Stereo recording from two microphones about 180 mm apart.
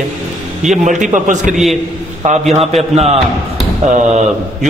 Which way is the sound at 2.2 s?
40° right (ahead or behind).